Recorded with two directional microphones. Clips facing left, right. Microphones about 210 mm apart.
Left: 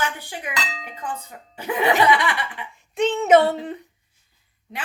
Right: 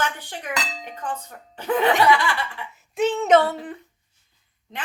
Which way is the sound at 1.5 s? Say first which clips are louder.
Right 1 dB; 10° left (ahead or behind).